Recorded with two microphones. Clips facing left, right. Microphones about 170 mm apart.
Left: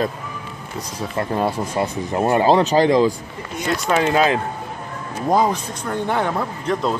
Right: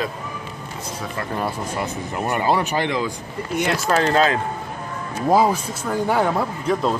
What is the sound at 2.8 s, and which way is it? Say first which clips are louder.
Speech: left 8 dB; 40° left (ahead or behind).